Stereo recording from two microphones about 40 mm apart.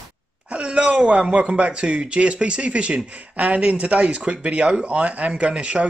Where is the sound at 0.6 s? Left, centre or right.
Right.